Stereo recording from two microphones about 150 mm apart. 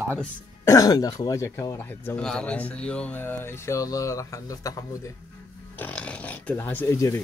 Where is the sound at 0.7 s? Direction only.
25° left (ahead or behind).